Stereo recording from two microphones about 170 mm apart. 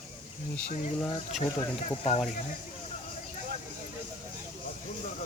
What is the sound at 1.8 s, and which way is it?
Speech, 35° left (ahead or behind).